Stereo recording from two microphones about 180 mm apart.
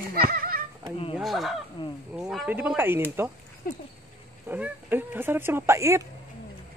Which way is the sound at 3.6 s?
55° left (ahead or behind).